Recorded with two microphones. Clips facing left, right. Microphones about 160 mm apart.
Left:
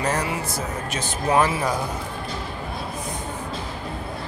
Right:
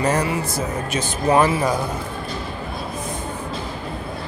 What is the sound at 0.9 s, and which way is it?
Speech, 5° right (ahead or behind).